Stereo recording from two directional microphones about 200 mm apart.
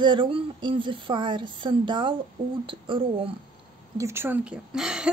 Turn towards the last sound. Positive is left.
turn(degrees=-5)  # may be behind; listen again after turning